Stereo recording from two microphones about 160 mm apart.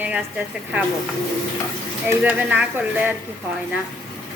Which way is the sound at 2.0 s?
10° right (ahead or behind).